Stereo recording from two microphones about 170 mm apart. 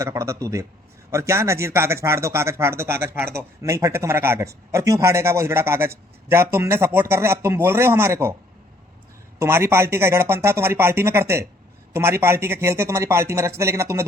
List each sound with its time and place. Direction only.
0.0 s speech: 15° right (ahead or behind)
9.4 s speech: 15° right (ahead or behind)